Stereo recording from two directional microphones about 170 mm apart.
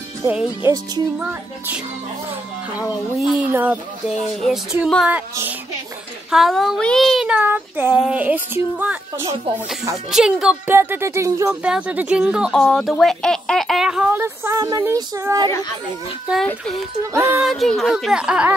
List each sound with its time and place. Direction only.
0.2 s speech: 10° right (ahead or behind)
2.8 s speech: 5° right (ahead or behind)
6.3 s speech: centre (ahead or behind)
10.1 s speech: 5° right (ahead or behind)
10.7 s speech: 15° right (ahead or behind)
16.3 s speech: 5° right (ahead or behind)
17.4 s speech: centre (ahead or behind)